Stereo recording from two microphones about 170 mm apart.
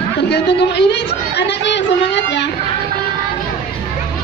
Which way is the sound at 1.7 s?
90° left.